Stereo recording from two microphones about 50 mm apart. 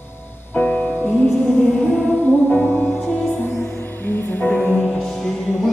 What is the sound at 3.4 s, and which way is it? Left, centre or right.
Music, left.